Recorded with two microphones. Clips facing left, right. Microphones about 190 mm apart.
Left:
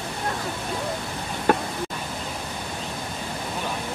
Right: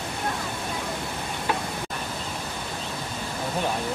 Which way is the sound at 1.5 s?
50° left (ahead or behind).